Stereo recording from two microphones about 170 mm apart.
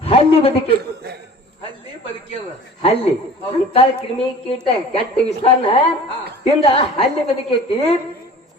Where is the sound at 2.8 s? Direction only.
35° left (ahead or behind).